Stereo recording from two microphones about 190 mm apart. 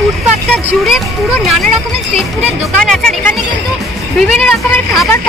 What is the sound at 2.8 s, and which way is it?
Speech, 5° left (ahead or behind).